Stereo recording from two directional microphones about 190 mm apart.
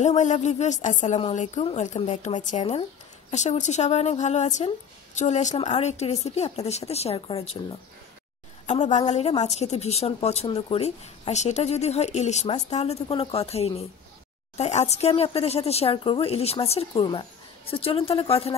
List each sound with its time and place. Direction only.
0.0 s speech: 40° left (ahead or behind)
8.6 s speech: 35° left (ahead or behind)